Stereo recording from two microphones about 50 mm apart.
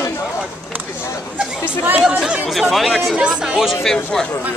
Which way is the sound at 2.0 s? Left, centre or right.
Centre.